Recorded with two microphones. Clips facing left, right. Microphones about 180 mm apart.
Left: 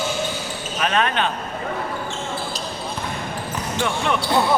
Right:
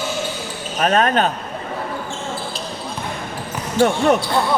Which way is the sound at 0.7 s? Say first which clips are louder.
Right 5 dB; 40° right (ahead or behind).